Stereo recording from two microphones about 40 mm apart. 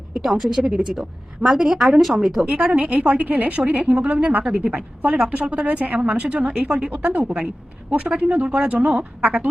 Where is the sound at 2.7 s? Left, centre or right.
Right.